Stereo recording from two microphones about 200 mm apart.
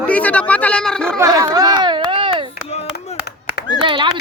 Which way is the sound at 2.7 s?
30° left (ahead or behind).